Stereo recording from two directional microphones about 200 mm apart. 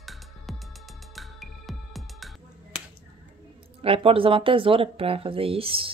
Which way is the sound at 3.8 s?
30° right (ahead or behind).